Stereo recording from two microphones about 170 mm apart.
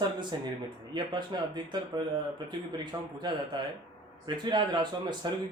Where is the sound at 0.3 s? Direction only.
30° right (ahead or behind).